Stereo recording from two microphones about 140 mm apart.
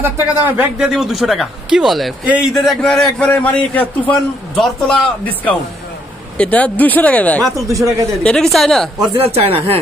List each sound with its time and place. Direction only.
0.0 s speech: 15° right (ahead or behind)
0.9 s a man's voice: centre (ahead or behind)
7.5 s speech: 25° right (ahead or behind)
8.2 s speech: 5° left (ahead or behind)
9.1 s speech: 45° right (ahead or behind)